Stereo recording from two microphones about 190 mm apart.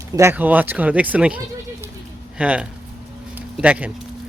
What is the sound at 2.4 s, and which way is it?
Speech, 5° right (ahead or behind).